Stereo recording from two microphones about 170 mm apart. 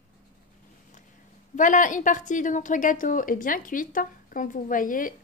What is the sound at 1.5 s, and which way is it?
A woman's voice, 50° left (ahead or behind).